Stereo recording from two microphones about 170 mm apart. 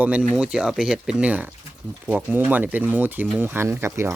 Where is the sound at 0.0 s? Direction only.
5° right (ahead or behind).